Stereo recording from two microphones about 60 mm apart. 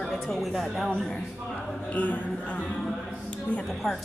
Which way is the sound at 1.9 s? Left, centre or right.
Left.